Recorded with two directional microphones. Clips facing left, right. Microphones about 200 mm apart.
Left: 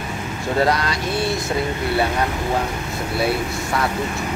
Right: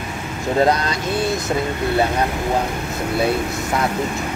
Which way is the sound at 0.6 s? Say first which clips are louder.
Right 2 dB; 20° right (ahead or behind).